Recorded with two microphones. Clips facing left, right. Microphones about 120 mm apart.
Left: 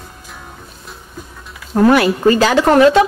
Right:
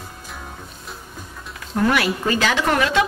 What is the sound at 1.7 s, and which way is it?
Speech, 35° left (ahead or behind).